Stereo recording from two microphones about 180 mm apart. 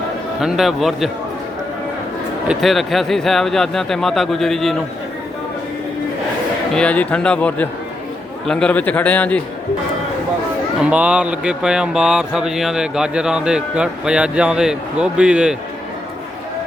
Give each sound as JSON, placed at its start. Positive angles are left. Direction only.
{"t": 0.3, "sound": "speech", "side_deg": 0}
{"t": 2.5, "sound": "speech", "side_deg": 0}
{"t": 6.7, "sound": "speech", "side_deg": 5}
{"t": 10.8, "sound": "speech", "side_deg": -5}